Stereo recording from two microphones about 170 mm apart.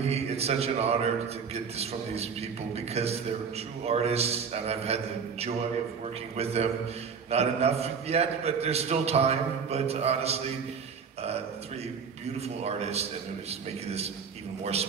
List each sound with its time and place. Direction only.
0.0 s a man's voice: 40° right (ahead or behind)
12.4 s a man's voice: 40° right (ahead or behind)